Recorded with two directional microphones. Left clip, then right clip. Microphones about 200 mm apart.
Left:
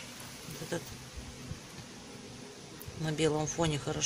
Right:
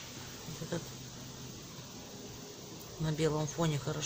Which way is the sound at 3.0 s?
15° left (ahead or behind).